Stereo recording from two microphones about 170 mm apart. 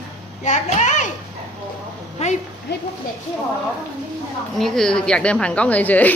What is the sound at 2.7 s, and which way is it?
Speech, 90° left.